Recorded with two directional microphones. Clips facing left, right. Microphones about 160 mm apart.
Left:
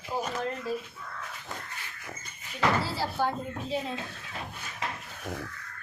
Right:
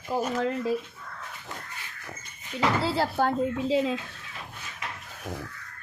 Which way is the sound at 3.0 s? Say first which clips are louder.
Right 5 dB; 60° right (ahead or behind).